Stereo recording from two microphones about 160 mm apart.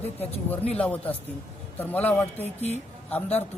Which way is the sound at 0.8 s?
10° left (ahead or behind).